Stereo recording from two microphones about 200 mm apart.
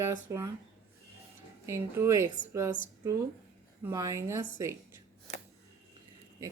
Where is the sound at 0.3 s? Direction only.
15° right (ahead or behind).